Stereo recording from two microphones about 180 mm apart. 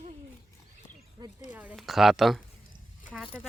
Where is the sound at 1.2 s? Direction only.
20° right (ahead or behind).